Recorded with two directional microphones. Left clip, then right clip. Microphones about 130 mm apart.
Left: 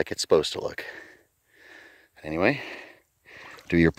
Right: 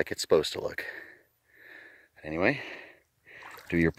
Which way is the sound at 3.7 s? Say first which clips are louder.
Left 5 dB; 60° left (ahead or behind).